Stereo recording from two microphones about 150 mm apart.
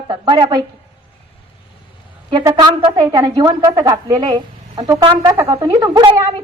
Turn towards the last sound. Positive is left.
turn(degrees=-30)  # may be behind; listen again after turning